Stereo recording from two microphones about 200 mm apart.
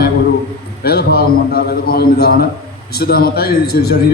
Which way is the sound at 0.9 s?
50° left (ahead or behind).